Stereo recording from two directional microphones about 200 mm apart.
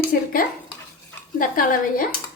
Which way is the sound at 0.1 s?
45° left (ahead or behind).